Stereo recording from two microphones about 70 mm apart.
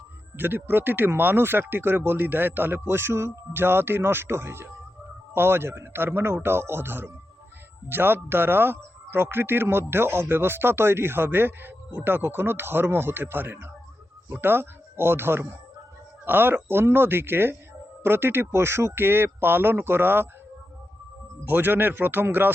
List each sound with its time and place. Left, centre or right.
0.3 s speech: right
21.4 s speech: right